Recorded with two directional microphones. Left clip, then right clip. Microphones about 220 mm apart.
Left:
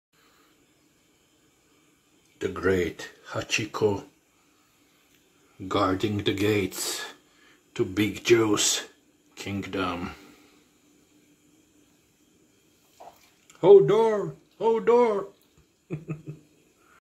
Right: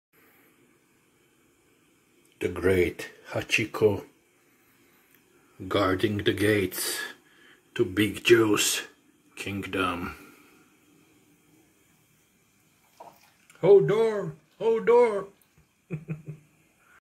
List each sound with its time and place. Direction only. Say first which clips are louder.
2.4 s speech: right 1 dB; 5° right (ahead or behind)
5.8 s speech: even; 10° left (ahead or behind)
13.6 s speech: left 3 dB; 20° left (ahead or behind)